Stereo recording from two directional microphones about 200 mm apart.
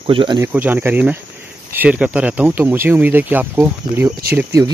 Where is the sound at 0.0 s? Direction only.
25° right (ahead or behind).